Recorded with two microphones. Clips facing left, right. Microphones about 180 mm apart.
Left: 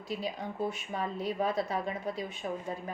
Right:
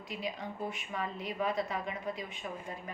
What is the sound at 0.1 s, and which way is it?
A woman's voice, 35° left (ahead or behind).